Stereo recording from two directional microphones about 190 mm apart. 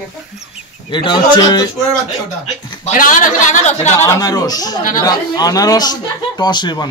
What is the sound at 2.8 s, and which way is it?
A man's voice, 45° left (ahead or behind).